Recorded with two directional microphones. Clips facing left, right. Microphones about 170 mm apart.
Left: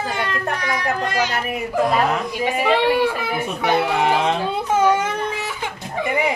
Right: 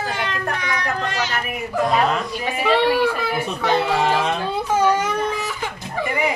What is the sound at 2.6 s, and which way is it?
A child's voice, 15° left (ahead or behind).